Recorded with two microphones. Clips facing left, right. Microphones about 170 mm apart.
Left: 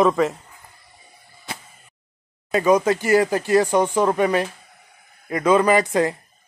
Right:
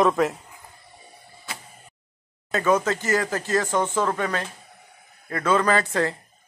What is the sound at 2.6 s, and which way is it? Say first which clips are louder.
Speech: left 4 dB; 15° left (ahead or behind).